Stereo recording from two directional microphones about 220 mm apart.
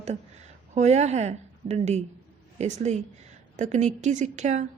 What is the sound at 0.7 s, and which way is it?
A woman's voice, 30° right (ahead or behind).